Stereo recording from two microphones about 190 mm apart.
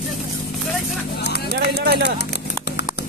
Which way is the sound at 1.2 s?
60° left (ahead or behind).